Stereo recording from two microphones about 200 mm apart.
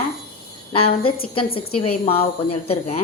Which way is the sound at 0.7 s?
30° left (ahead or behind).